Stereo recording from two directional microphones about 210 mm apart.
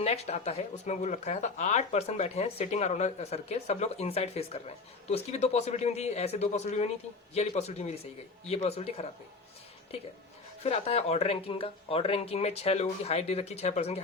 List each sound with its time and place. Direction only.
0.0 s speech: 30° left (ahead or behind)
10.6 s speech: 30° left (ahead or behind)